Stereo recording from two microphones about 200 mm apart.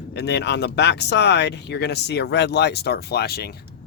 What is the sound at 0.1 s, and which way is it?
Speech, 55° left (ahead or behind).